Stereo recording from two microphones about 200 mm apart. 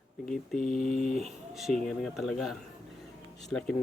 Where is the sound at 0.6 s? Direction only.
40° left (ahead or behind).